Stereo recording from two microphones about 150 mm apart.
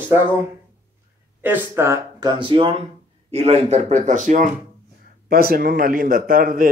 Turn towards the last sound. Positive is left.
turn(degrees=-70)  # may be behind; listen again after turning